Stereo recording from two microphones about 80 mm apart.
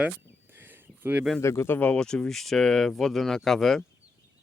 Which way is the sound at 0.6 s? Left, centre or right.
Right.